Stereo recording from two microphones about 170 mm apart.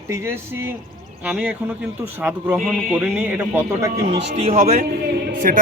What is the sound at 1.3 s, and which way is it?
Speech, 5° right (ahead or behind).